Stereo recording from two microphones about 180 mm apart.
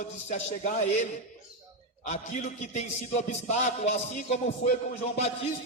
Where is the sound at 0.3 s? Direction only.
40° left (ahead or behind).